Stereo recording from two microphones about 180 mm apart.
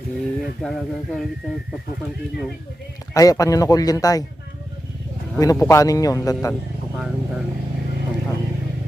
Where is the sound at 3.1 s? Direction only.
20° left (ahead or behind).